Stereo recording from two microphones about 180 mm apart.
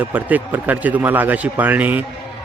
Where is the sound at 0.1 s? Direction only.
10° right (ahead or behind).